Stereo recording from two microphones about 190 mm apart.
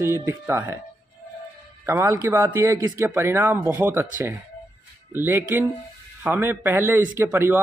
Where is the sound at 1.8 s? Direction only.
15° right (ahead or behind).